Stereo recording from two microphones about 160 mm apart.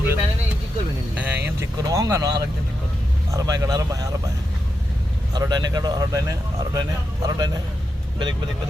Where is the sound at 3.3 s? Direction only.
20° right (ahead or behind).